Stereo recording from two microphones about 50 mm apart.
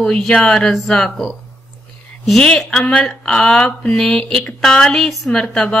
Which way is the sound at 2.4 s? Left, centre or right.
Centre.